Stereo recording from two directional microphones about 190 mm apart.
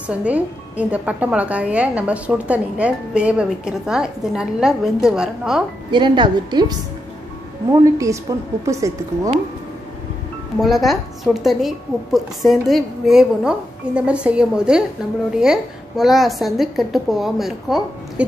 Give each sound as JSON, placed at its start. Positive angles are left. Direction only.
{"t": 0.1, "sound": "a woman's voice", "side_deg": -5}
{"t": 5.9, "sound": "a woman's voice", "side_deg": -25}
{"t": 8.3, "sound": "a woman's voice", "side_deg": -15}
{"t": 10.6, "sound": "a woman's voice", "side_deg": 0}